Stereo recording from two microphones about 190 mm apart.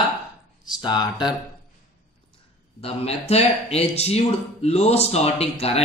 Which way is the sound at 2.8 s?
30° left (ahead or behind).